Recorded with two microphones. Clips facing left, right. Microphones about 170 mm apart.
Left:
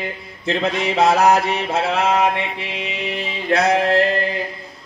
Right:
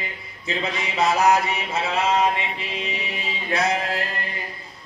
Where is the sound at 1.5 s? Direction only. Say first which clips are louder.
Left 6 dB; 65° left (ahead or behind).